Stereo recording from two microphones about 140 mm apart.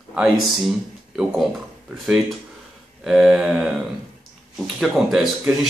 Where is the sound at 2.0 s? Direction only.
5° right (ahead or behind).